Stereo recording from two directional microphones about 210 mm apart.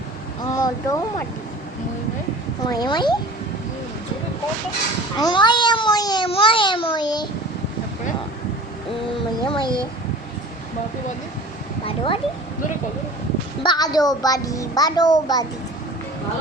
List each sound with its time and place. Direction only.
0.5 s speech: 15° left (ahead or behind)
2.6 s a child's voice: 20° left (ahead or behind)
5.2 s a child's voice: 20° left (ahead or behind)
9.4 s a child's voice: 20° left (ahead or behind)
11.9 s a sound: 25° left (ahead or behind)
13.6 s a child's voice: 20° left (ahead or behind)